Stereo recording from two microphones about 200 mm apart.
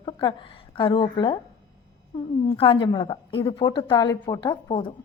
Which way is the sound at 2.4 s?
25° left (ahead or behind).